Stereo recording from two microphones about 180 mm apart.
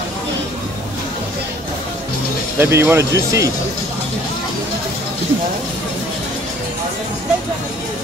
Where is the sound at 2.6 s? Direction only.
15° right (ahead or behind).